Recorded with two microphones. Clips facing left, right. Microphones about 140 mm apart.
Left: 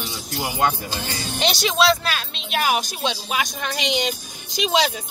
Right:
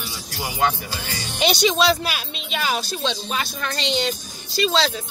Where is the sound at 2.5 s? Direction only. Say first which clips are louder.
Left 3 dB; 15° left (ahead or behind).